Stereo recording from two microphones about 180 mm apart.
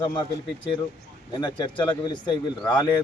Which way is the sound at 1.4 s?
25° left (ahead or behind).